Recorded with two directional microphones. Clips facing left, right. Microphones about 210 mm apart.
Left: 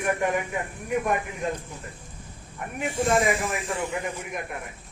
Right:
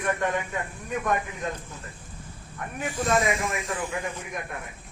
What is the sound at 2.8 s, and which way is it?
Speech, 25° left (ahead or behind).